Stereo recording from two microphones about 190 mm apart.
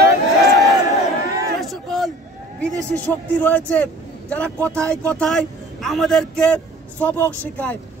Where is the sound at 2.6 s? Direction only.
10° left (ahead or behind).